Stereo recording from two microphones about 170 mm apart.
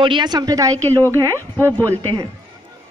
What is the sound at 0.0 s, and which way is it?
A woman's voice, 25° right (ahead or behind).